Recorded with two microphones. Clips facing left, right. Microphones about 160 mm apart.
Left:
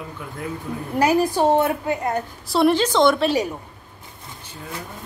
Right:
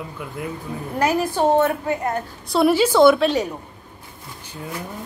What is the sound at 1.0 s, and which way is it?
Speech, 10° left (ahead or behind).